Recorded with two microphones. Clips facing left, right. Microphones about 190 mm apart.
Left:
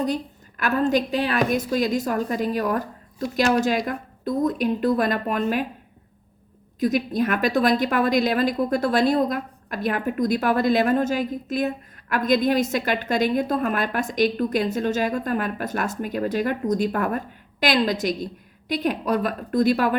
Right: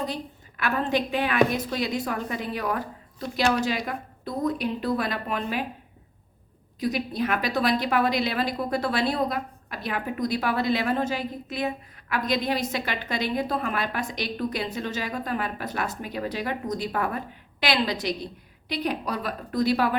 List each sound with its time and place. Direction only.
0.1 s a woman's voice: 45° left (ahead or behind)
6.7 s a woman's voice: 45° left (ahead or behind)